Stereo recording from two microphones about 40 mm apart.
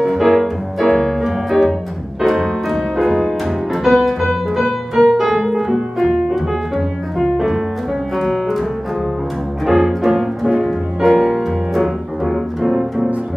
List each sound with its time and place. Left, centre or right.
0.0 s piano: centre
2.2 s music: centre
9.7 s music: centre